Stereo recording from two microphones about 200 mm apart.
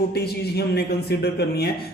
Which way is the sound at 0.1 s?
55° left (ahead or behind).